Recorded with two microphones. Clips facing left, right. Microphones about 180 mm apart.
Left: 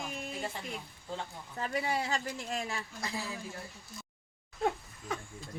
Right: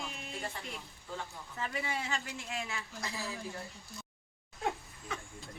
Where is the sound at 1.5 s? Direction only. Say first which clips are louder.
Left 5 dB; 40° left (ahead or behind).